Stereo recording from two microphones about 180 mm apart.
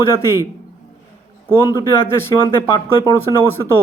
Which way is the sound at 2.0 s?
15° left (ahead or behind).